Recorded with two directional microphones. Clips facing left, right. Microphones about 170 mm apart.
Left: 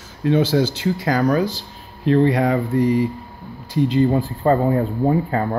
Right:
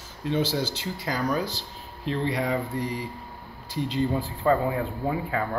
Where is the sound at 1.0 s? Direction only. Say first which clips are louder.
Left 8 dB; 70° left (ahead or behind).